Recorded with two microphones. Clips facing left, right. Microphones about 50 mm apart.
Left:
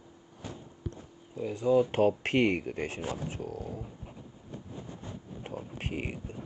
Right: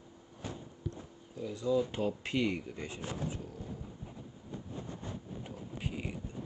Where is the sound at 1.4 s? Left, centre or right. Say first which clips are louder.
Left 6 dB; left.